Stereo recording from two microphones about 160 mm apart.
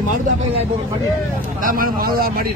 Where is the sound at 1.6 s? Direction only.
60° right (ahead or behind).